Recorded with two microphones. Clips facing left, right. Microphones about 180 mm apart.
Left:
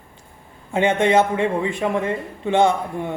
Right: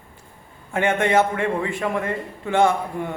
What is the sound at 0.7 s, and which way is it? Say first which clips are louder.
A man's voice: left 2 dB; 20° left (ahead or behind).